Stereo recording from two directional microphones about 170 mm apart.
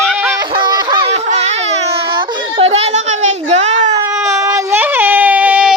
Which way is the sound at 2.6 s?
40° right (ahead or behind).